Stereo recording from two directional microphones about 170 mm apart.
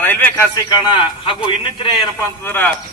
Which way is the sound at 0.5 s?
25° left (ahead or behind).